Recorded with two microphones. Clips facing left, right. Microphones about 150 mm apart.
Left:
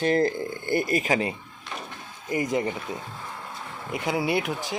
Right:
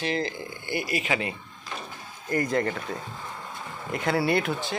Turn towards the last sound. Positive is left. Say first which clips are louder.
# right 1 dB
turn(degrees=15)  # may be behind; listen again after turning